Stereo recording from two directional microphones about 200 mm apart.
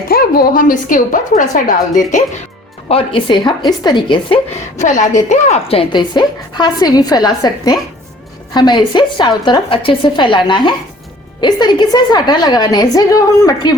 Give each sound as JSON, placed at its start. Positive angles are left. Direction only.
{"t": 0.1, "sound": "a woman's voice", "side_deg": 45}
{"t": 2.9, "sound": "a woman's voice", "side_deg": 25}
{"t": 4.8, "sound": "a woman's voice", "side_deg": 35}